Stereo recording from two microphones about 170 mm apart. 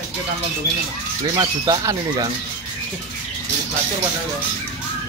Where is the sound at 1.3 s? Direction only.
25° right (ahead or behind).